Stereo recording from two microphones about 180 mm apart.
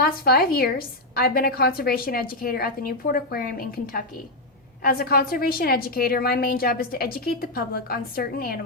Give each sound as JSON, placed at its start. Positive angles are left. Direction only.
{"t": 0.0, "sound": "a woman's voice", "side_deg": 60}